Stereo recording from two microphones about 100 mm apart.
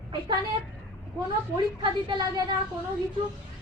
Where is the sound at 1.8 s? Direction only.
45° right (ahead or behind).